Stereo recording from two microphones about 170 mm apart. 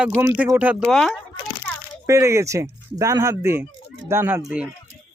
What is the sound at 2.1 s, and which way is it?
Speech, 15° right (ahead or behind).